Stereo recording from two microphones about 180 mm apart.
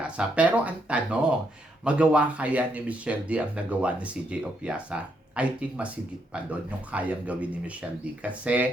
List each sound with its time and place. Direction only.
0.0 s speech: 5° right (ahead or behind)